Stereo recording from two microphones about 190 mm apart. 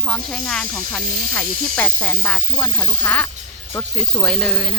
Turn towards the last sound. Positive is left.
turn(degrees=5)  # may be behind; listen again after turning